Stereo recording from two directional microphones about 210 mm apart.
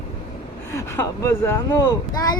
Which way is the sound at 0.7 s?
15° left (ahead or behind).